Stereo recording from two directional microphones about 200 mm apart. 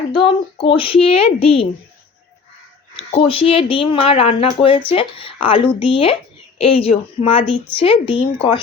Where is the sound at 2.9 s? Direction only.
30° left (ahead or behind).